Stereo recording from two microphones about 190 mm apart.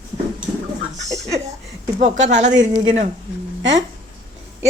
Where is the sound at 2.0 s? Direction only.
40° right (ahead or behind).